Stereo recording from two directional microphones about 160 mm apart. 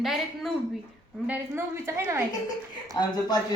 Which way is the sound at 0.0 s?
Centre (ahead or behind).